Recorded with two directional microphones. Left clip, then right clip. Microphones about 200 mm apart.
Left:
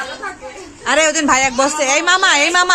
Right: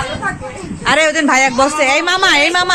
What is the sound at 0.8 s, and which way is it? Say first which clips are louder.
A woman's voice: right 2 dB; 15° left (ahead or behind).